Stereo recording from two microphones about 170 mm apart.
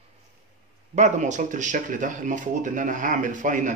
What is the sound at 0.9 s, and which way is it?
Speech, 45° right (ahead or behind).